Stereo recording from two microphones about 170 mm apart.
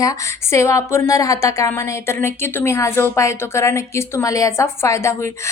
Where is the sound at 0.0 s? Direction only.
20° left (ahead or behind).